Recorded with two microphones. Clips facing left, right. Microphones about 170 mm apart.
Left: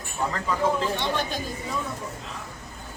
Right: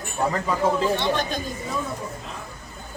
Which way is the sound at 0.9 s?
10° left (ahead or behind).